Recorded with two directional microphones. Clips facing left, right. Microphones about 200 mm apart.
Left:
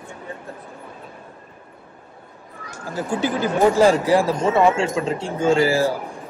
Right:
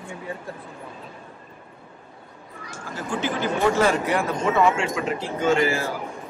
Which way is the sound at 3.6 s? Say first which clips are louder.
Left 6 dB; 35° left (ahead or behind).